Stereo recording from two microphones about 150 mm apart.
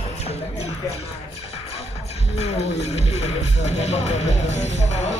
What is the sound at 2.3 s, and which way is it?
Speech, 45° left (ahead or behind).